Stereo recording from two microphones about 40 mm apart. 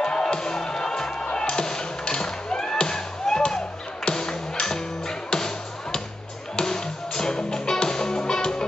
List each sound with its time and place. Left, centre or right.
0.0 s music: left